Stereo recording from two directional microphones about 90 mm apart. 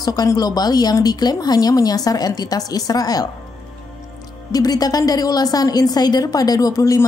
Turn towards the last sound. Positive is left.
turn(degrees=40)  # may be behind; listen again after turning